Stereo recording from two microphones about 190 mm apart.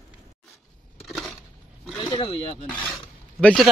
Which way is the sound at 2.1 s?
30° left (ahead or behind).